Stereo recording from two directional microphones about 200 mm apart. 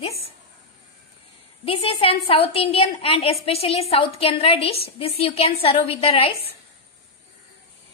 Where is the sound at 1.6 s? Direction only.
30° left (ahead or behind).